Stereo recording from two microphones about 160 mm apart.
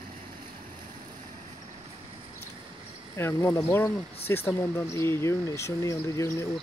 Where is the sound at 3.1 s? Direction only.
15° left (ahead or behind).